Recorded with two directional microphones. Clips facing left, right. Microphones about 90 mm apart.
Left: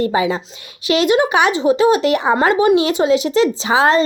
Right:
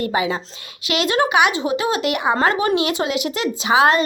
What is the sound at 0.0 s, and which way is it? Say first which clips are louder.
Speech: left 4 dB; 25° left (ahead or behind).